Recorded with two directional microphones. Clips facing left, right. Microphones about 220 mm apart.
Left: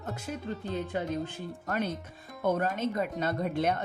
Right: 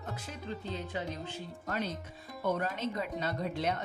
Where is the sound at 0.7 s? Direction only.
50° left (ahead or behind).